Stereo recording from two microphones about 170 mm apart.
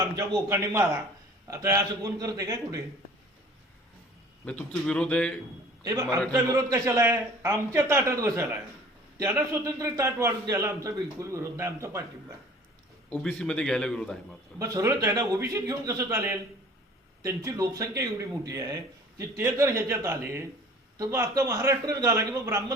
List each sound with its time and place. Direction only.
0.2 s a man's voice: 15° right (ahead or behind)
4.4 s a man's voice: 5° left (ahead or behind)
5.8 s a man's voice: 20° right (ahead or behind)
13.1 s a man's voice: 5° left (ahead or behind)
14.6 s a man's voice: 20° right (ahead or behind)